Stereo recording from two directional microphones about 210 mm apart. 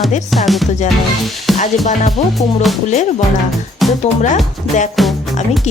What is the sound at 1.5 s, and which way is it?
Music, 35° left (ahead or behind).